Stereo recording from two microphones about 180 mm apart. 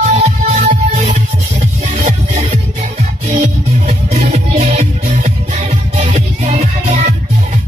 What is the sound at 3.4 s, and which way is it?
Music, 40° right (ahead or behind).